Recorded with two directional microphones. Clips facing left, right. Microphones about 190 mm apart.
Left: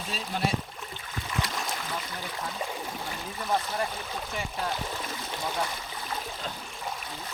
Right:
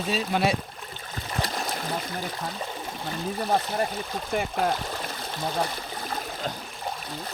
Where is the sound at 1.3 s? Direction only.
35° right (ahead or behind).